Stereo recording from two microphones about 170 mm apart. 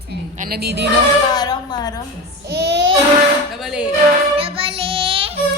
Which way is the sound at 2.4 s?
75° right (ahead or behind).